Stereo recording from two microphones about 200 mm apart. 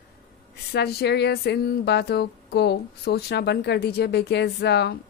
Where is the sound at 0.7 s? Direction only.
55° left (ahead or behind).